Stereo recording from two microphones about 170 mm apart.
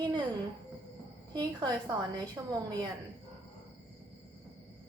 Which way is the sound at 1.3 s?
25° right (ahead or behind).